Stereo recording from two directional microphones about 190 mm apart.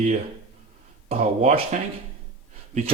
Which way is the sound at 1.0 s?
35° right (ahead or behind).